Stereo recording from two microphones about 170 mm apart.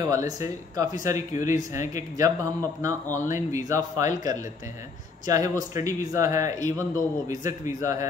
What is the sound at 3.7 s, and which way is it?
Speech, 20° right (ahead or behind).